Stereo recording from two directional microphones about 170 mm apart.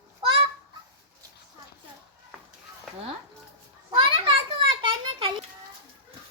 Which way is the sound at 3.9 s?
30° right (ahead or behind).